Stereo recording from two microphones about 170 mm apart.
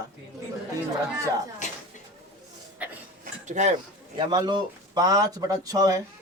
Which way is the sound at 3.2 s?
45° right (ahead or behind).